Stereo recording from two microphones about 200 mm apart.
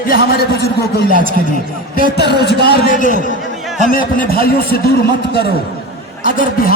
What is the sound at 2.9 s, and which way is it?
A man's voice, 45° left (ahead or behind).